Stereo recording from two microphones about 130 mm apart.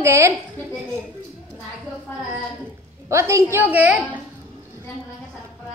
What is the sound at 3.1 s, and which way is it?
A woman's voice, 20° right (ahead or behind).